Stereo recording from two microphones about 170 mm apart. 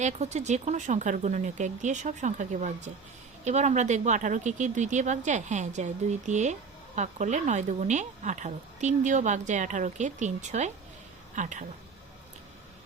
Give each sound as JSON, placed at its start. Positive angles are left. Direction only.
{"t": 0.0, "sound": "speech", "side_deg": -45}